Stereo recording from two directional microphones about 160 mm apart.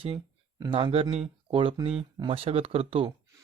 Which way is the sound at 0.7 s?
35° right (ahead or behind).